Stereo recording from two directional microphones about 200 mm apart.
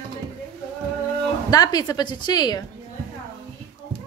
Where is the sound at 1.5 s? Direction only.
20° left (ahead or behind).